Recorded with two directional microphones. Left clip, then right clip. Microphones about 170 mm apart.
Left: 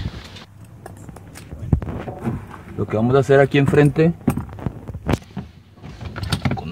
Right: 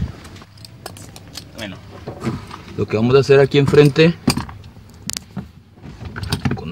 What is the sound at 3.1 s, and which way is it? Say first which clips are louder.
Speech: right 3 dB; 5° right (ahead or behind).